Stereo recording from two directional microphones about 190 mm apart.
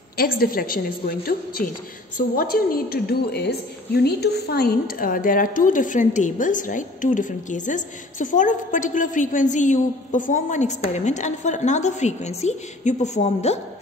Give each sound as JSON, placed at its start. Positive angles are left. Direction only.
{"t": 0.2, "sound": "a woman's voice", "side_deg": 50}